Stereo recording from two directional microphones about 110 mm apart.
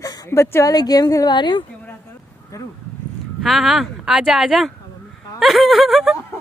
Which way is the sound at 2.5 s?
30° left (ahead or behind).